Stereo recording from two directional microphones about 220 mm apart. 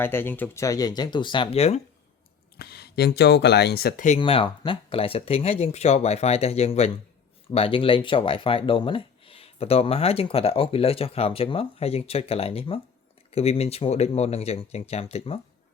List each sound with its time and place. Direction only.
0.0 s speech: 10° left (ahead or behind); by 1.8 s 30° left (ahead or behind)
2.6 s speech: 45° left (ahead or behind)
4.2 s speech: 25° left (ahead or behind)